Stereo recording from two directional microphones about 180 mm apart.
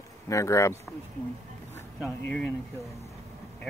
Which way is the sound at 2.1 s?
10° left (ahead or behind).